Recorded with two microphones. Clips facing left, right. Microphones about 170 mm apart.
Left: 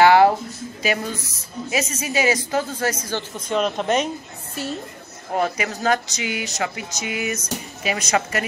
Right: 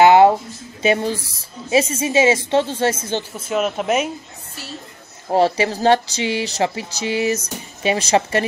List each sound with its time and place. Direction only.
0.0 s a sound: 20° right (ahead or behind)
0.8 s a woman's voice: 30° right (ahead or behind)
3.3 s speech: 5° right (ahead or behind)
5.3 s speech: 30° right (ahead or behind)